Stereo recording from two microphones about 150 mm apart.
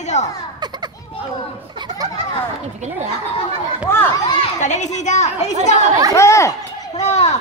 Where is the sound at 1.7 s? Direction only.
25° right (ahead or behind).